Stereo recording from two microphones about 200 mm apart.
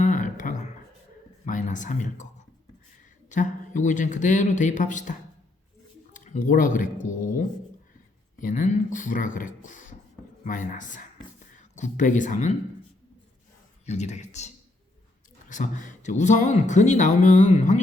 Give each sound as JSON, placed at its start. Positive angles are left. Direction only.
{"t": 0.0, "sound": "guitar", "side_deg": 40}
{"t": 1.5, "sound": "speech", "side_deg": 40}
{"t": 3.2, "sound": "speech", "side_deg": 40}
{"t": 6.1, "sound": "speech", "side_deg": 40}
{"t": 13.8, "sound": "speech", "side_deg": 35}